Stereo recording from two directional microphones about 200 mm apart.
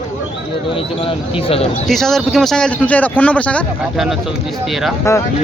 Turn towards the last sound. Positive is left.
turn(degrees=0)  # may be behind; listen again after turning